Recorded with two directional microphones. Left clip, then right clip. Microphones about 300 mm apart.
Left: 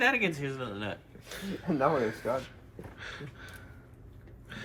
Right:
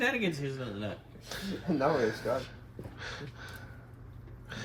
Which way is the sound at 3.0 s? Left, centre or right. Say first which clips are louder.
Right 1 dB; centre.